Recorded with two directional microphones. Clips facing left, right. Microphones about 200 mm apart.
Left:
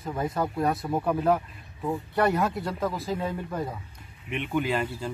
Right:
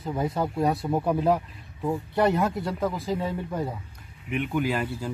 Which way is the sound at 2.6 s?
10° right (ahead or behind).